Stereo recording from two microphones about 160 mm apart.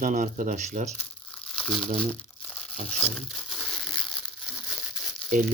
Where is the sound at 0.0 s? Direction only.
55° right (ahead or behind).